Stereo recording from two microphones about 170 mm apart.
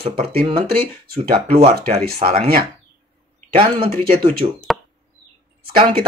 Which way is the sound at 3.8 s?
30° right (ahead or behind).